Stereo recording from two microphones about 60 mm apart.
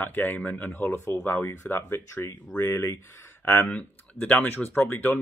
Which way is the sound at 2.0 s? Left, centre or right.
Left.